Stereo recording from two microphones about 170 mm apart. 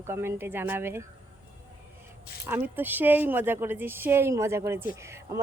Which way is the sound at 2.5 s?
10° right (ahead or behind).